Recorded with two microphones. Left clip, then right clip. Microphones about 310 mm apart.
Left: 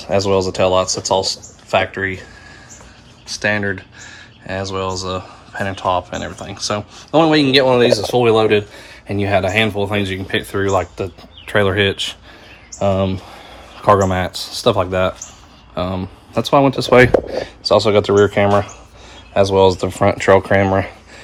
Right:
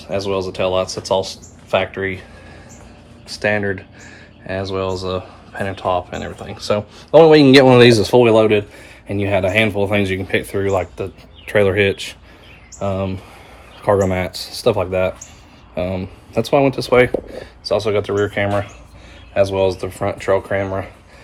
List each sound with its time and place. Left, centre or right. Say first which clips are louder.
0.0 s speech: left 5 dB; centre
3.4 s speech: even; centre
7.4 s speech: right 3 dB; right
8.1 s speech: right 1 dB; centre; by 20.9 s left